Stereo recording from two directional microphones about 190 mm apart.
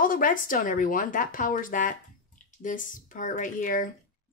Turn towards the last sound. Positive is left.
turn(degrees=45)  # may be behind; listen again after turning